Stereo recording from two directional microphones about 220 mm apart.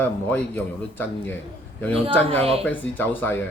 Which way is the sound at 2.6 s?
10° left (ahead or behind).